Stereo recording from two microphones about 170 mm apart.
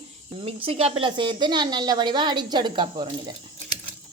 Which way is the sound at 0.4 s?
35° right (ahead or behind).